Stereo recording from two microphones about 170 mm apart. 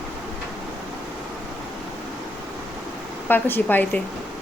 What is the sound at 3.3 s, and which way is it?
Speech, 10° left (ahead or behind).